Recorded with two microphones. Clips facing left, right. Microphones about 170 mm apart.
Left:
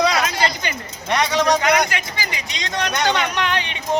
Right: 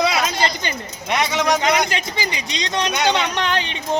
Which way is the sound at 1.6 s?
25° right (ahead or behind).